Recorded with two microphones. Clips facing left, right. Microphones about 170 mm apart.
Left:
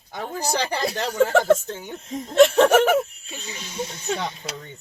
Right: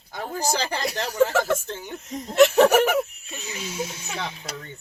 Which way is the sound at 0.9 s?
25° left (ahead or behind).